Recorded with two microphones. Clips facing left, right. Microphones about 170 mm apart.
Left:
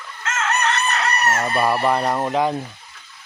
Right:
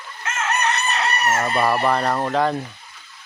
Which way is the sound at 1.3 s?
Centre (ahead or behind).